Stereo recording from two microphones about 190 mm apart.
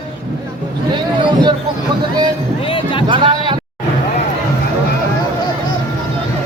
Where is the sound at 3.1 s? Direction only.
25° right (ahead or behind).